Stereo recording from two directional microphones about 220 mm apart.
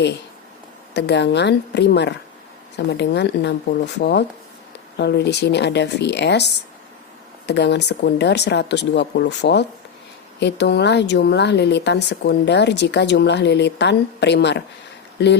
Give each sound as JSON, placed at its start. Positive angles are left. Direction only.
{"t": 0.9, "sound": "speech", "side_deg": 50}